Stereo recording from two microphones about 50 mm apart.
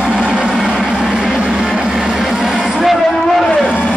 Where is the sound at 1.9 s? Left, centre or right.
Centre.